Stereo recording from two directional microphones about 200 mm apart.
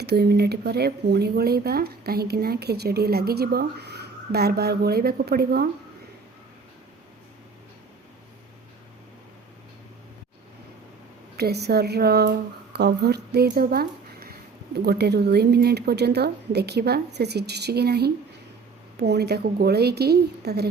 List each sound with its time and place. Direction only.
0.0 s speech: 55° right (ahead or behind)
11.3 s a woman's voice: 55° right (ahead or behind)
13.5 s a sound: 50° right (ahead or behind)
14.8 s a woman's voice: 55° right (ahead or behind)